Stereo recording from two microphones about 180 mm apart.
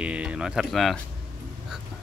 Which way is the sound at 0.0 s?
5° right (ahead or behind).